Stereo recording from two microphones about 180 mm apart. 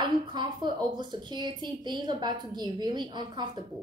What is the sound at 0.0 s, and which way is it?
A woman's voice, 25° right (ahead or behind).